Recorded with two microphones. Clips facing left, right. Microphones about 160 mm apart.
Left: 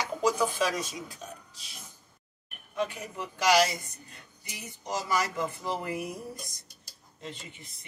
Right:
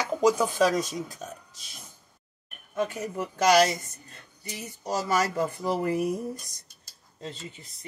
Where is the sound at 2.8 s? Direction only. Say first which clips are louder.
Right 4 dB; 40° right (ahead or behind).